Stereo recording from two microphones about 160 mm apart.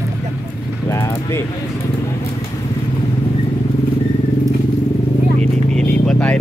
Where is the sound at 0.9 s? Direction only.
20° left (ahead or behind).